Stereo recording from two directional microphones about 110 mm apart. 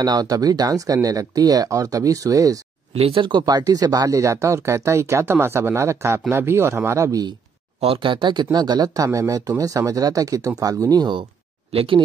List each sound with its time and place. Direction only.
0.0 s speech: 35° right (ahead or behind)
2.9 s speech: 60° right (ahead or behind); by 7.3 s 35° right (ahead or behind)
7.8 s speech: 55° right (ahead or behind)
11.7 s speech: 55° right (ahead or behind)